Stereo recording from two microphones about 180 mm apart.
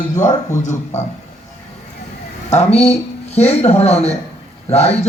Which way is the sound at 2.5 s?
35° left (ahead or behind).